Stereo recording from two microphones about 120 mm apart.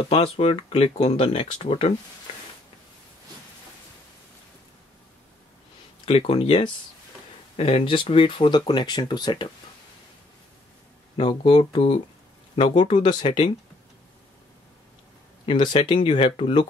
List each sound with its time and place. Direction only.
0.1 s speech: 55° left (ahead or behind)
6.0 s speech: 55° left (ahead or behind); by 9.5 s 40° left (ahead or behind)
11.2 s speech: 50° left (ahead or behind)
12.5 s speech: 45° left (ahead or behind)
15.4 s speech: 40° left (ahead or behind)